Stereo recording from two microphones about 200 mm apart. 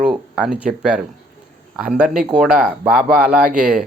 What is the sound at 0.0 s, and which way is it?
Speech, 5° right (ahead or behind).